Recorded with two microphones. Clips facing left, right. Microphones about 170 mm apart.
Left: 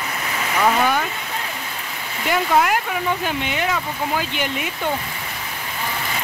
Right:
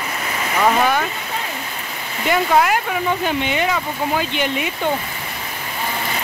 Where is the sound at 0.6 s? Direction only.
5° right (ahead or behind).